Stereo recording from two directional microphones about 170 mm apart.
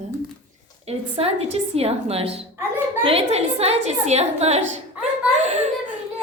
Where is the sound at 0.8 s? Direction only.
35° right (ahead or behind).